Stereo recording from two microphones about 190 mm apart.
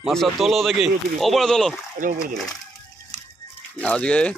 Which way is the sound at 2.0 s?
45° right (ahead or behind).